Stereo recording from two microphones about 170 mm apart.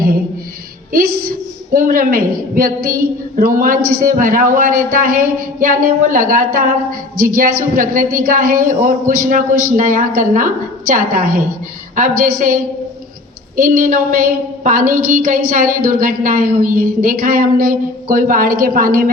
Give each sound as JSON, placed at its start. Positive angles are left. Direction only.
{"t": 0.9, "sound": "a woman's voice", "side_deg": -60}
{"t": 13.6, "sound": "a woman's voice", "side_deg": -55}